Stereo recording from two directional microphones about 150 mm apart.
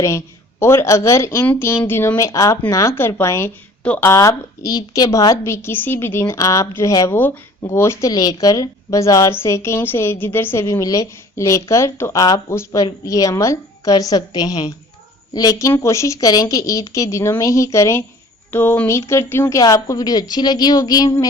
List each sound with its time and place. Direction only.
0.6 s speech: 15° left (ahead or behind)